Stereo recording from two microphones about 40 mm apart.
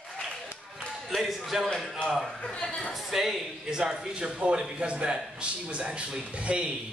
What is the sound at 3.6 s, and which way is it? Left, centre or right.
A man's voice, centre.